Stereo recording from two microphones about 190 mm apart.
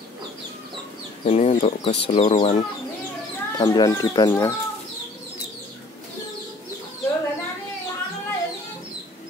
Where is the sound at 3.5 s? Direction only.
20° left (ahead or behind).